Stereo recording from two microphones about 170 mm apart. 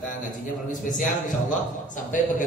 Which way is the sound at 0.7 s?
50° left (ahead or behind).